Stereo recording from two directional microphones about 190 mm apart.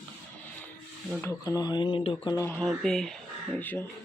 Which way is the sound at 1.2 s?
15° left (ahead or behind).